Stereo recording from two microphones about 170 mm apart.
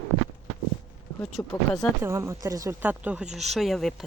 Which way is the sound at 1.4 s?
Centre (ahead or behind).